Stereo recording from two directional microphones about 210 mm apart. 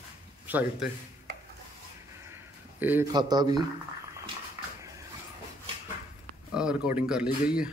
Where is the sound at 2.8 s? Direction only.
10° right (ahead or behind).